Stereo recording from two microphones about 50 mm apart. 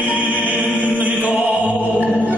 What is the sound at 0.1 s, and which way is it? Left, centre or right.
Chant, right.